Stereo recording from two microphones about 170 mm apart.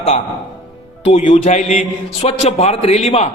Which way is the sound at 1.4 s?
45° left (ahead or behind).